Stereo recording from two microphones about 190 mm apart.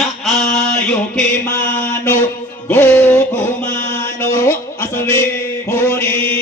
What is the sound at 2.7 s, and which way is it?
Music, 10° left (ahead or behind).